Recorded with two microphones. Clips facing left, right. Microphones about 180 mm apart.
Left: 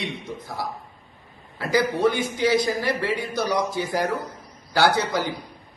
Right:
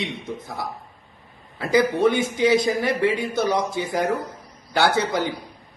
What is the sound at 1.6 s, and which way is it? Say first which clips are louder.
A man's voice: right 2 dB; 20° right (ahead or behind).